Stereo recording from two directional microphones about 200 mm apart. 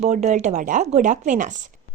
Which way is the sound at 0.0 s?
35° right (ahead or behind).